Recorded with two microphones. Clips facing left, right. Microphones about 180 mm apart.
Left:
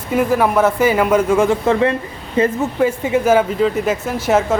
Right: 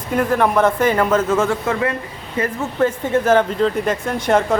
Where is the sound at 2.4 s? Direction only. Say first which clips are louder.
Left 6 dB; 25° left (ahead or behind).